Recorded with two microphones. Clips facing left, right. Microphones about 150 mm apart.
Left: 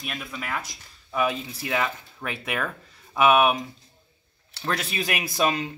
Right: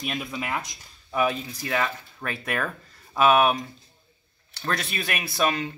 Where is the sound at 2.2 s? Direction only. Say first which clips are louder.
Even; centre (ahead or behind).